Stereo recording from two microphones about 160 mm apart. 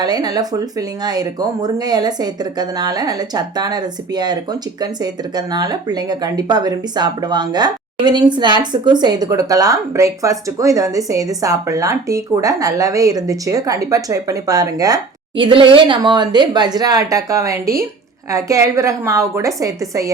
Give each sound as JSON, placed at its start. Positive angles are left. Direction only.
{"t": 0.0, "sound": "speech", "side_deg": -25}